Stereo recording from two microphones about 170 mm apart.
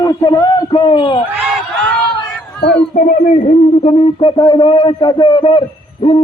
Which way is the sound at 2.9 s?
45° left (ahead or behind).